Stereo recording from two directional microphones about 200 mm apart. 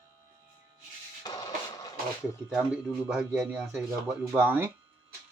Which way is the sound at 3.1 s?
5° right (ahead or behind).